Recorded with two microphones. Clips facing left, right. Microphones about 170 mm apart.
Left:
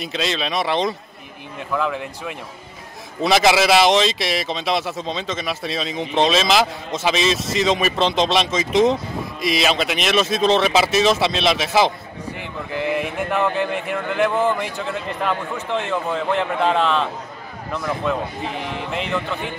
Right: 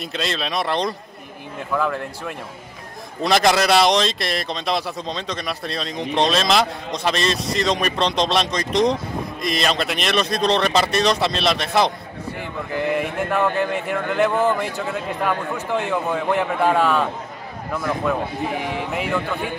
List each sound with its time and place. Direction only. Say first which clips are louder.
0.0 s a man's voice: left 2 dB; centre (ahead or behind)